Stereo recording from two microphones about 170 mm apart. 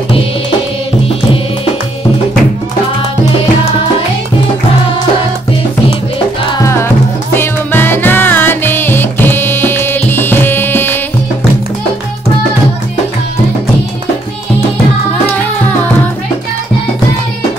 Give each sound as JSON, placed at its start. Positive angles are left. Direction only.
{"t": 6.6, "sound": "music", "side_deg": 15}